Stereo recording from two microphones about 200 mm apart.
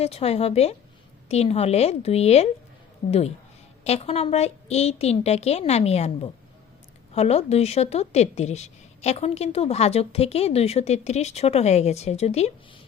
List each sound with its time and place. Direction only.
0.0 s a woman's voice: 30° left (ahead or behind)
7.1 s a woman's voice: 30° left (ahead or behind)